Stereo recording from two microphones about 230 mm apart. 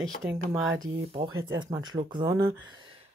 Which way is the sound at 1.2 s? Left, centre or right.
Right.